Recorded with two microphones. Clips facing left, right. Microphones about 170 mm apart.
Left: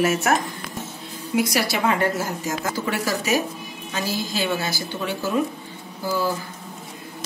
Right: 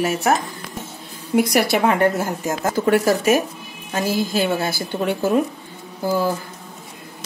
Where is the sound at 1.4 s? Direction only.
60° right (ahead or behind).